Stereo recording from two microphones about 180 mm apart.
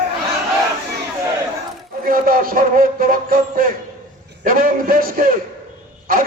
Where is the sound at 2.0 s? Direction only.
55° right (ahead or behind).